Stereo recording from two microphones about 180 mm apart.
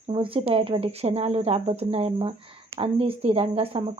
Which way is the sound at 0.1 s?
30° right (ahead or behind).